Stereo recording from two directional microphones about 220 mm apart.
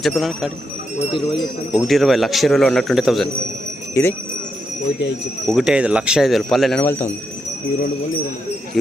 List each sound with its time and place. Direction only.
0.0 s a man's voice: centre (ahead or behind)
0.9 s speech: 20° left (ahead or behind)
1.7 s a man's voice: centre (ahead or behind)
4.0 s speech: 10° left (ahead or behind)
5.5 s a man's voice: centre (ahead or behind)
8.7 s a man's voice: centre (ahead or behind)